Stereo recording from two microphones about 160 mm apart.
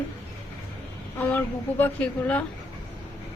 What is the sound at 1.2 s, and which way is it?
Speech, 10° left (ahead or behind).